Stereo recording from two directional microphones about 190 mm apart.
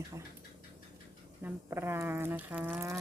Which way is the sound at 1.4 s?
10° right (ahead or behind).